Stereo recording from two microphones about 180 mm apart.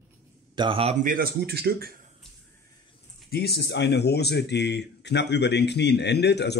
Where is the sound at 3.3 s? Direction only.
65° left (ahead or behind).